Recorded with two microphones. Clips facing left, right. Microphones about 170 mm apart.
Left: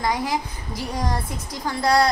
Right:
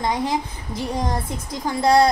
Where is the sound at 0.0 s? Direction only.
25° right (ahead or behind).